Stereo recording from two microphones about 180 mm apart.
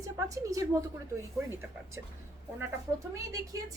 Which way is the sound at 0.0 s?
20° right (ahead or behind).